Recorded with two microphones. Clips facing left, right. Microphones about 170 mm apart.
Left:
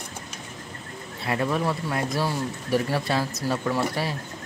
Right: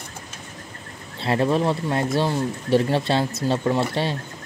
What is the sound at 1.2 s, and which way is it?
Speech, 30° right (ahead or behind).